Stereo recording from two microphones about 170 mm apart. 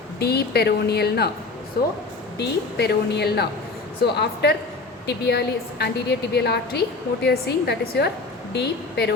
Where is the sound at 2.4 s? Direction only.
70° left (ahead or behind).